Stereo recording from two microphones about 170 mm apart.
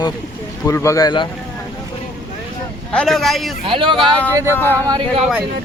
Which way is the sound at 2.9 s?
Centre (ahead or behind).